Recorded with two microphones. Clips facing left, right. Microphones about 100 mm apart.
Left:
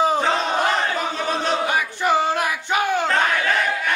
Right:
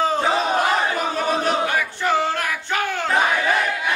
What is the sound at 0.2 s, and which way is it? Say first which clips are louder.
Battle cry: right 1 dB; 5° right (ahead or behind).